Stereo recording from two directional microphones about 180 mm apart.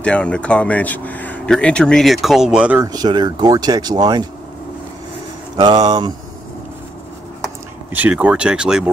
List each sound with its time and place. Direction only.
0.0 s speech: 5° left (ahead or behind)
2.9 s speech: 25° right (ahead or behind)
5.6 s speech: 25° right (ahead or behind)
7.9 s speech: 10° right (ahead or behind)